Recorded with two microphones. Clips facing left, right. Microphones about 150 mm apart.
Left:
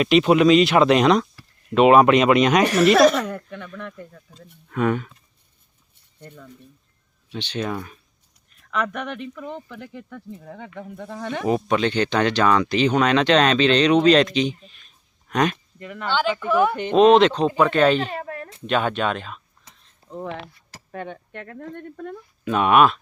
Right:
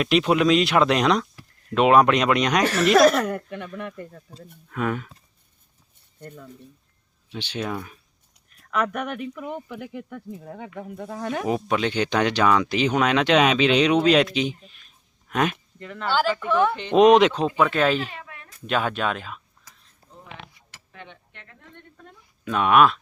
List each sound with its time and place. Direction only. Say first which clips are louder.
0.0 s speech: left 4 dB; centre (ahead or behind)
4.1 s speech: right 3 dB; 30° right (ahead or behind)
4.7 s speech: left 5 dB; centre (ahead or behind)
6.1 s speech: right 2 dB; 10° right (ahead or behind)
15.8 s speech: left 1 dB; 10° left (ahead or behind)
16.0 s speech: even; 5° right (ahead or behind)
16.9 s speech: left 1 dB; 15° right (ahead or behind)
18.1 s a sound: left 11 dB; 45° left (ahead or behind)
18.6 s speech: left 2 dB; 5° right (ahead or behind)
20.2 s speech: left 10 dB; 45° left (ahead or behind)
22.4 s speech: left 1 dB; centre (ahead or behind)